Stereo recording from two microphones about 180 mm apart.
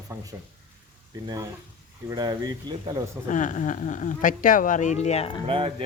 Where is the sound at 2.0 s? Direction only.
20° right (ahead or behind).